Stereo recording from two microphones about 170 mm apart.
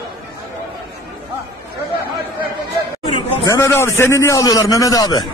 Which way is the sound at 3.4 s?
15° left (ahead or behind).